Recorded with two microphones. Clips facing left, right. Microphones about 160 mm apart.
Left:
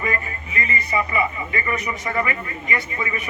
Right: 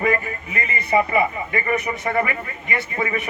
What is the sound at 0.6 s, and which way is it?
A man's voice, 60° right (ahead or behind).